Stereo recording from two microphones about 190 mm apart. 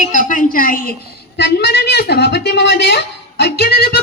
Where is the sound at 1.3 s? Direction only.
65° left (ahead or behind).